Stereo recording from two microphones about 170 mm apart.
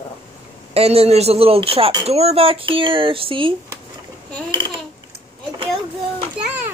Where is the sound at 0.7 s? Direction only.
35° right (ahead or behind).